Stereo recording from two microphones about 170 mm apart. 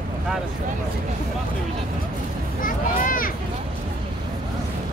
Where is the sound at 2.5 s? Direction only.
55° left (ahead or behind).